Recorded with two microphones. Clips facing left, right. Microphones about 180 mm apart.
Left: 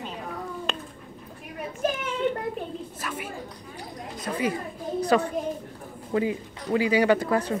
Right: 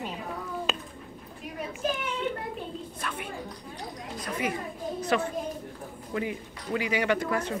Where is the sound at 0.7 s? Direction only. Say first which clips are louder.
Right 1 dB; 5° right (ahead or behind).